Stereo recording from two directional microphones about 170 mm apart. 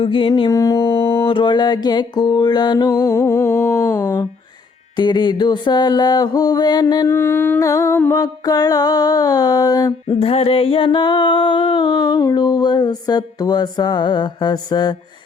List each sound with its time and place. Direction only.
0.0 s mantra: 30° left (ahead or behind)
1.0 s a sound: 15° left (ahead or behind)
1.3 s mantra: 25° left (ahead or behind); by 4.2 s 10° left (ahead or behind)
4.9 s mantra: 25° left (ahead or behind)
10.1 s mantra: 35° left (ahead or behind)